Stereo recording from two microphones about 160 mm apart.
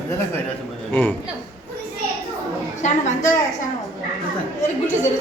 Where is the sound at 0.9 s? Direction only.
10° left (ahead or behind).